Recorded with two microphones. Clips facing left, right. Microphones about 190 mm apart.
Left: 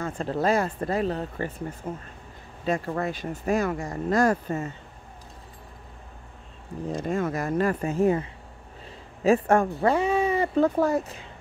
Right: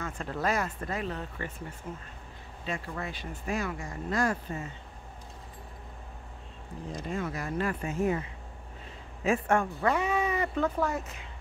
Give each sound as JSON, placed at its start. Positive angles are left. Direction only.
{"t": 0.0, "sound": "speech", "side_deg": 30}
{"t": 7.0, "sound": "speech", "side_deg": 50}